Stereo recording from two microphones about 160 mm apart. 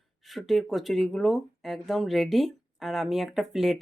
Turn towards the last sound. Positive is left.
turn(degrees=0)  # may be behind; listen again after turning